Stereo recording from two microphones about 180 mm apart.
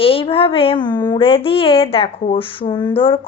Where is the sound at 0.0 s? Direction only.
30° left (ahead or behind).